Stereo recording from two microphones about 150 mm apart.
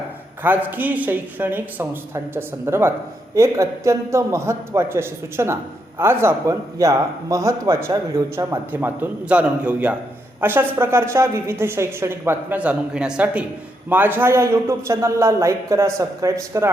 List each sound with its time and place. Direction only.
0.4 s a woman's voice: 10° right (ahead or behind)